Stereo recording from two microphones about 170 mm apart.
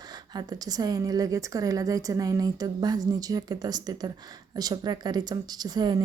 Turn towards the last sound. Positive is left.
turn(degrees=-25)  # may be behind; listen again after turning